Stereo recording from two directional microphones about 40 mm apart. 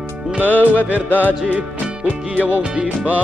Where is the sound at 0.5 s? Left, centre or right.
Left.